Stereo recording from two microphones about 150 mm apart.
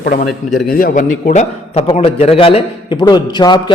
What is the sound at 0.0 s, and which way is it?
A man's voice, 65° left (ahead or behind).